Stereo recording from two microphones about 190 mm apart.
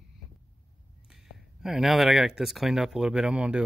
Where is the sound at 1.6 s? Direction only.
Centre (ahead or behind).